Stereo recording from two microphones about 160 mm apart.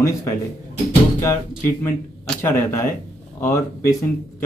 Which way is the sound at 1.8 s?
15° left (ahead or behind).